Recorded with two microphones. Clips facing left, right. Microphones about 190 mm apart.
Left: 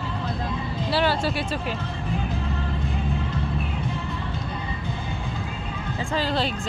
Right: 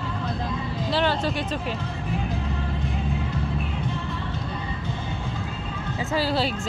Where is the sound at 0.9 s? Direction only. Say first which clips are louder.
Left 1 dB; 5° left (ahead or behind).